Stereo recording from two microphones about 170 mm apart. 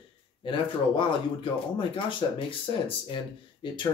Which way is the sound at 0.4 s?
30° left (ahead or behind).